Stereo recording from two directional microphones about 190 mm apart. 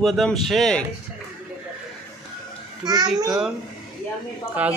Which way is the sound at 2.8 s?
20° right (ahead or behind).